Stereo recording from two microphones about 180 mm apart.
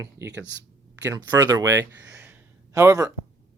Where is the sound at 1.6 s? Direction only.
15° right (ahead or behind).